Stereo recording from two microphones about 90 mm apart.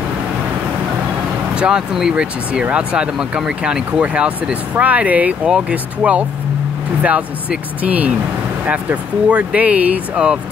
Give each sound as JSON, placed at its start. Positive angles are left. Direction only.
{"t": 1.5, "sound": "speech", "side_deg": -10}